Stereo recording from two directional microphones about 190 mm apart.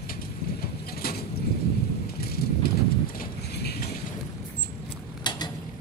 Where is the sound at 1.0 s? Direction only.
55° left (ahead or behind).